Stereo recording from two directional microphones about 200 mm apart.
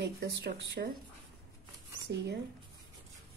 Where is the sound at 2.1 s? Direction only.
60° right (ahead or behind).